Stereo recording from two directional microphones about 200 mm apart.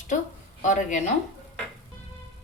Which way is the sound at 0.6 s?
40° left (ahead or behind).